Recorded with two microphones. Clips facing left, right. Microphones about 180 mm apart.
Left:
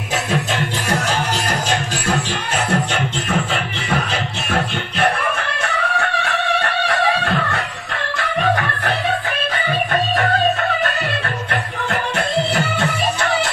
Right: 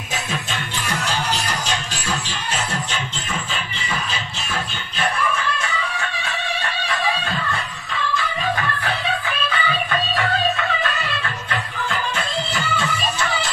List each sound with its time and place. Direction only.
1.7 s music: 55° left (ahead or behind)
12.5 s music: 60° left (ahead or behind)